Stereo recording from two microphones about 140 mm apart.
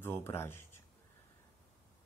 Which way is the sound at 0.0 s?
15° left (ahead or behind).